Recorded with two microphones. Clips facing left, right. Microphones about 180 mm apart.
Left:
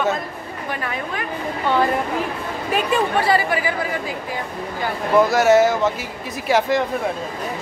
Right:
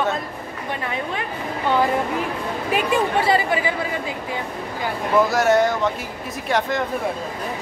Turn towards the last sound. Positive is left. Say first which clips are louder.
# left 4 dB
turn(degrees=5)  # may be behind; listen again after turning